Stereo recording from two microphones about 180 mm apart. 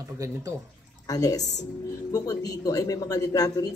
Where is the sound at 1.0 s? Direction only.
20° left (ahead or behind).